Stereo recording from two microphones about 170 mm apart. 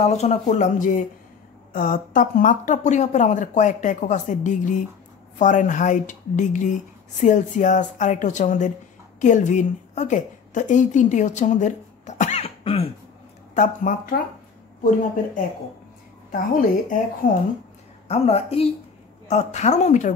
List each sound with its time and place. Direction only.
0.0 s a woman's voice: 40° left (ahead or behind)
13.6 s speech: 55° left (ahead or behind)
17.2 s speech: 55° left (ahead or behind)
18.0 s a woman's voice: 40° left (ahead or behind)